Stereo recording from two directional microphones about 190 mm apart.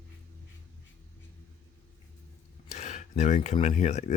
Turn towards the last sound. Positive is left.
turn(degrees=35)  # may be behind; listen again after turning